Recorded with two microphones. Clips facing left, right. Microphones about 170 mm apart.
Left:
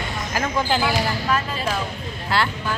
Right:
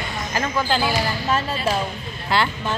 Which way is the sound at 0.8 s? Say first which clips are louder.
Even; 25° right (ahead or behind).